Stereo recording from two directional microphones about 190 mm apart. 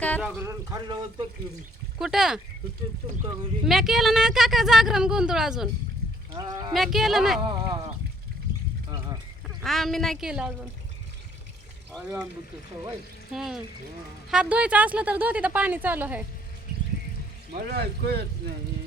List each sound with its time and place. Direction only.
0.2 s a woman's voice: 10° right (ahead or behind)
2.0 s speech: centre (ahead or behind)
3.7 s speech: centre (ahead or behind)
6.3 s speech: 20° right (ahead or behind)
6.7 s speech: centre (ahead or behind)
7.4 s speech: 25° right (ahead or behind)
9.6 s speech: centre (ahead or behind)
13.3 s a woman's voice: 5° right (ahead or behind)
17.5 s speech: 55° right (ahead or behind)